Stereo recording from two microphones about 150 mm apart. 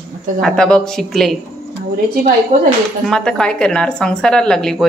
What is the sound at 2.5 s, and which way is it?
Speech, 60° right (ahead or behind).